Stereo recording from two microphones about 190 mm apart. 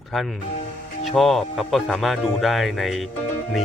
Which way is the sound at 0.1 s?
Centre (ahead or behind).